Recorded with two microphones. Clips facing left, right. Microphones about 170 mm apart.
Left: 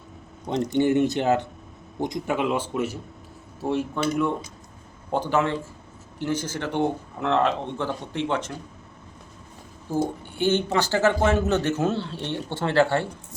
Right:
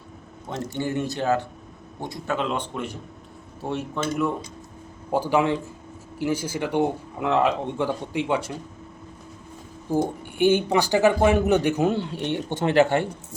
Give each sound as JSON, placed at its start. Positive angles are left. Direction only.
{"t": 0.4, "sound": "a man's voice", "side_deg": 20}
{"t": 5.1, "sound": "speech", "side_deg": -10}
{"t": 9.9, "sound": "speech", "side_deg": -15}